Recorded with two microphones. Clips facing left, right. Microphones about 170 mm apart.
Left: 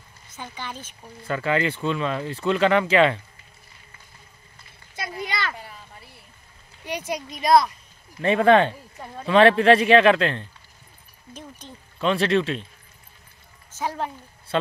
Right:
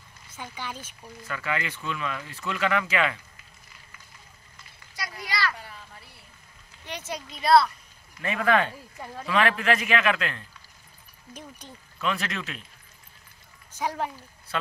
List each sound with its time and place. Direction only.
0.3 s speech: 10° right (ahead or behind)
1.2 s speech: 30° left (ahead or behind)
4.9 s a sound: 25° left (ahead or behind)
6.8 s speech: 10° left (ahead or behind)
8.2 s speech: 30° left (ahead or behind)
11.3 s speech: 10° right (ahead or behind)
12.0 s speech: 30° left (ahead or behind)
13.7 s speech: 15° right (ahead or behind)
14.5 s speech: 30° left (ahead or behind)